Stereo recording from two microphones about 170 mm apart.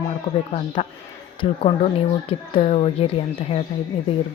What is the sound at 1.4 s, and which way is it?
Speech, 30° left (ahead or behind).